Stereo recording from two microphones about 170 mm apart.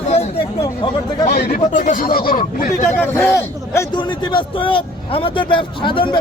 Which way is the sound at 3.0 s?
15° left (ahead or behind).